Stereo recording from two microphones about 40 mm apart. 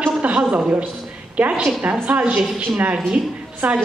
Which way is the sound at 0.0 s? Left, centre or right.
Right.